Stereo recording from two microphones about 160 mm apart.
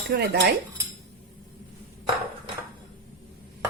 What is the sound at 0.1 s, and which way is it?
Dishes, 90° right.